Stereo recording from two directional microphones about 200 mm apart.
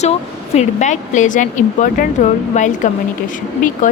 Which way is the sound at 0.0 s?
35° left (ahead or behind).